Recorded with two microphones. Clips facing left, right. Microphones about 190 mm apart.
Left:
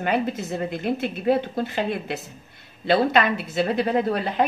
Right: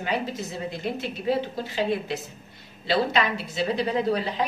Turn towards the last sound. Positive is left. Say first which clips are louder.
# left 3 dB
turn(degrees=55)  # may be behind; listen again after turning